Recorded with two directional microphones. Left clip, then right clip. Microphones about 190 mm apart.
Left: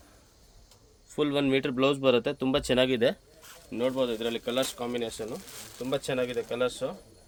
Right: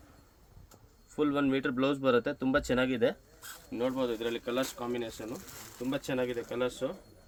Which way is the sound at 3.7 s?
80° left.